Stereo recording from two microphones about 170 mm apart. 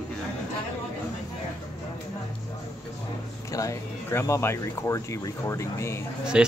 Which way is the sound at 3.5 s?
20° left (ahead or behind).